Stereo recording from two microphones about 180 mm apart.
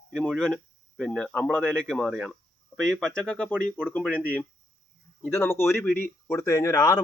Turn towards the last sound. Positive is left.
turn(degrees=15)  # may be behind; listen again after turning